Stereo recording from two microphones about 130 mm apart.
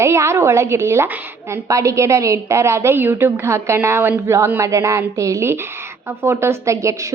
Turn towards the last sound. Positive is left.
turn(degrees=-25)  # may be behind; listen again after turning